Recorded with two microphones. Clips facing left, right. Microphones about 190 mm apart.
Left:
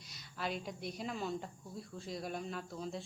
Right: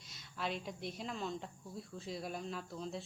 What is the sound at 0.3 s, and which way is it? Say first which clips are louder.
A woman's voice: left 1 dB; centre (ahead or behind).